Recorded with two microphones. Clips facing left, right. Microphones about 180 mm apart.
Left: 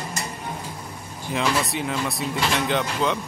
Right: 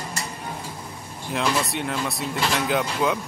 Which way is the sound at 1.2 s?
Centre (ahead or behind).